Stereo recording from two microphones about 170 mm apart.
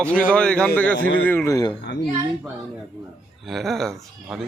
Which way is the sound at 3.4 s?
Centre (ahead or behind).